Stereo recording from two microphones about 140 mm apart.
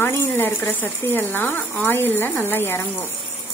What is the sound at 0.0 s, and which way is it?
Speech, 15° left (ahead or behind).